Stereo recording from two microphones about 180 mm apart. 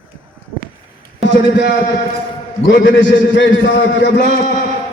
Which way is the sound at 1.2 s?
90° left.